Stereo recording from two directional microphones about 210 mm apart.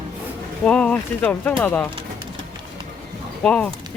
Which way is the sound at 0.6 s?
5° left (ahead or behind).